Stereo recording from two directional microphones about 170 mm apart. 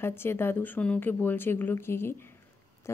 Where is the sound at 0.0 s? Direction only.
15° left (ahead or behind).